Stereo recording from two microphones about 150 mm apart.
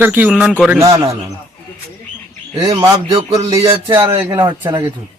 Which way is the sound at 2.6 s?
20° right (ahead or behind).